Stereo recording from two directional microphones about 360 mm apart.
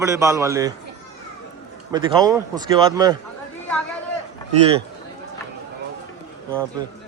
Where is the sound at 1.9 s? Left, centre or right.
Centre.